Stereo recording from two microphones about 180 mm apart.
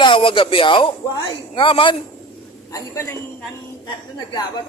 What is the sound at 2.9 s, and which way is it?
Speech, 15° left (ahead or behind).